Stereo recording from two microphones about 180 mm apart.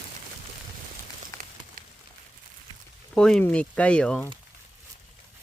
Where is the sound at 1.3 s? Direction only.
15° left (ahead or behind).